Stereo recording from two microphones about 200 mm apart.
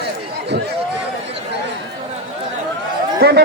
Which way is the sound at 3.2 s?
55° right (ahead or behind).